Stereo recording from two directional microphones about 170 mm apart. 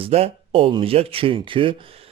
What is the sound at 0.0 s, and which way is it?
Speech, 35° right (ahead or behind).